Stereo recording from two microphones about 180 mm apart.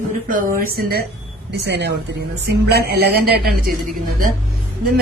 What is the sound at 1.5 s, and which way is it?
A woman's voice, 70° right (ahead or behind).